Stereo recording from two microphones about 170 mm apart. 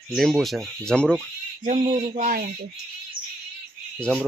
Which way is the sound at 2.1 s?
60° right (ahead or behind).